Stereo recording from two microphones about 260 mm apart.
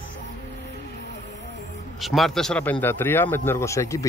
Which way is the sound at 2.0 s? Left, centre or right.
Centre.